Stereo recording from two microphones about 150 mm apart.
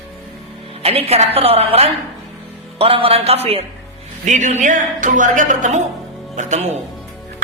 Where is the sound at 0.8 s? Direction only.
40° right (ahead or behind).